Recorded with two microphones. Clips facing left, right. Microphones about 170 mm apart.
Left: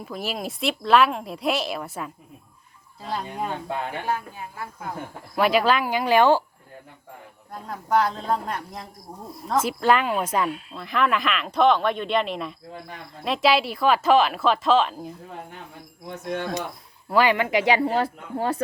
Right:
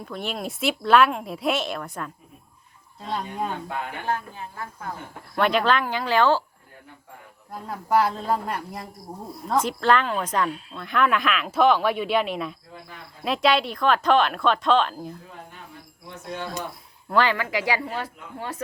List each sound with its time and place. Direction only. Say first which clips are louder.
0.0 s speech: left 1 dB; 5° left (ahead or behind)
7.5 s speech: right 1 dB; 5° right (ahead or behind)
16.0 s speech: left 5 dB; 60° left (ahead or behind)
17.1 s speech: left 2 dB; 10° left (ahead or behind)
17.3 s speech: left 5 dB; 20° left (ahead or behind)
17.8 s speech: left 8 dB; 35° left (ahead or behind)